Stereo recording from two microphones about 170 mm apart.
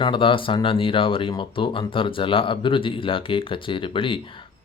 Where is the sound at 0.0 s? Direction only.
30° left (ahead or behind).